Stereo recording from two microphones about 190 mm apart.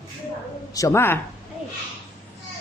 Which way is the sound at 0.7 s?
15° left (ahead or behind).